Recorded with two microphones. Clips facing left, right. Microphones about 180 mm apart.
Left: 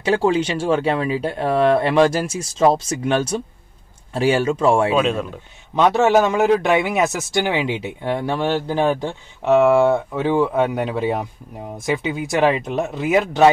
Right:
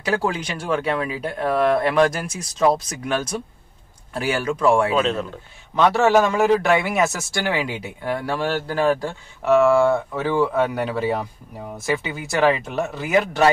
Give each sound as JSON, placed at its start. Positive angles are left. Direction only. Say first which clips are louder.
{"t": 0.0, "sound": "a man's voice", "louder": "left 6 dB", "side_deg": 25}